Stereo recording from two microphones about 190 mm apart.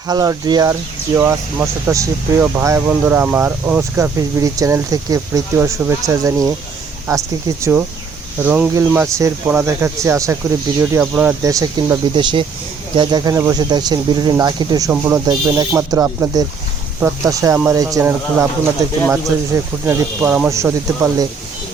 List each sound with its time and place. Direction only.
0.1 s speech: 20° right (ahead or behind)